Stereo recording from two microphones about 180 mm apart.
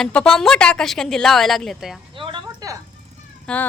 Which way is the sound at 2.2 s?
25° right (ahead or behind).